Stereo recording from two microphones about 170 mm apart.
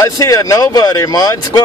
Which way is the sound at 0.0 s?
20° left (ahead or behind).